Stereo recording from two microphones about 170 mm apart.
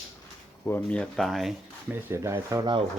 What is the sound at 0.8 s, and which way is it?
Speech, 5° left (ahead or behind).